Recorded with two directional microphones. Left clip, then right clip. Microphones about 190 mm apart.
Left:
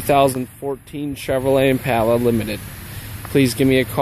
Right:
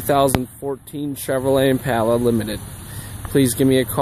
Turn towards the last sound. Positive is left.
turn(degrees=-5)  # may be behind; listen again after turning